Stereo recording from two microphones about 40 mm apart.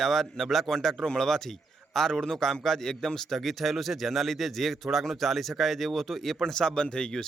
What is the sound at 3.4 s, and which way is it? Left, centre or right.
Speech, centre.